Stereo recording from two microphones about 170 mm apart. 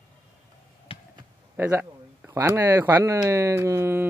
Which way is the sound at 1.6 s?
15° right (ahead or behind).